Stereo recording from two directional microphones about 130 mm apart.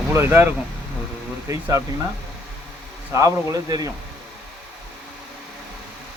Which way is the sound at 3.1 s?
25° right (ahead or behind).